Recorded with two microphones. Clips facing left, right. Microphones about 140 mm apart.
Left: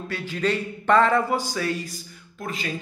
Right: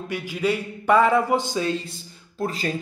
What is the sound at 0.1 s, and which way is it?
Speech, 10° right (ahead or behind).